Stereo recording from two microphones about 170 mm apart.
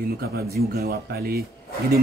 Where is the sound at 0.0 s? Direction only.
65° right (ahead or behind).